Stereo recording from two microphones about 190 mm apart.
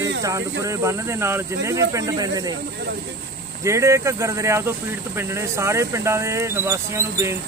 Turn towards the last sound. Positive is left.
turn(degrees=-15)  # may be behind; listen again after turning